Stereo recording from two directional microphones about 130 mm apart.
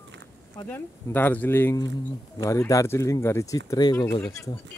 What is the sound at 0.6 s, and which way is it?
Speech, 15° left (ahead or behind).